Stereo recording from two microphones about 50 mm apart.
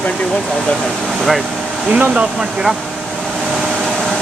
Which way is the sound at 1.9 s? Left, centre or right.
Right.